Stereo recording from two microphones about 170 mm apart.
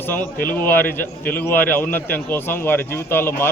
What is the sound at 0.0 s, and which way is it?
A man's voice, 10° left (ahead or behind).